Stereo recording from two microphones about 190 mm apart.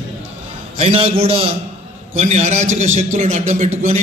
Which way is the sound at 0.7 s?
30° right (ahead or behind).